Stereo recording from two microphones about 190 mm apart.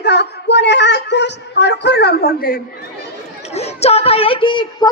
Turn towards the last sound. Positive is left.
turn(degrees=25)  # may be behind; listen again after turning